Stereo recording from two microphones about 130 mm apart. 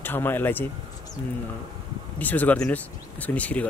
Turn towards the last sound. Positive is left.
turn(degrees=10)  # may be behind; listen again after turning